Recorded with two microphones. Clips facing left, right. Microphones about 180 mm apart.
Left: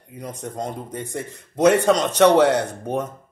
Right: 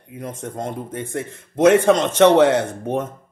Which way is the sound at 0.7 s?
15° left (ahead or behind).